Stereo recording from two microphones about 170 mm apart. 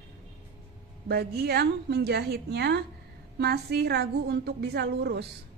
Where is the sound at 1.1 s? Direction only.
70° right (ahead or behind).